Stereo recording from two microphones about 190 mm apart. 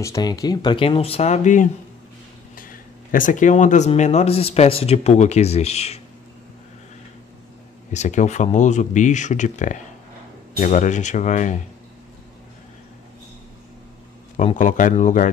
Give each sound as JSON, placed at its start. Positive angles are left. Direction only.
{"t": 0.0, "sound": "speech", "side_deg": 20}
{"t": 7.9, "sound": "speech", "side_deg": 40}
{"t": 14.3, "sound": "speech", "side_deg": 40}